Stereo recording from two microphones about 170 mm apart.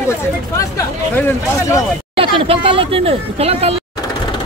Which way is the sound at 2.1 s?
30° right (ahead or behind).